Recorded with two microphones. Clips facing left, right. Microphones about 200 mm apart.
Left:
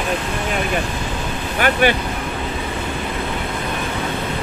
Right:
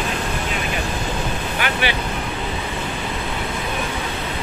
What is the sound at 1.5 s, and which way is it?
Speech, 45° left (ahead or behind).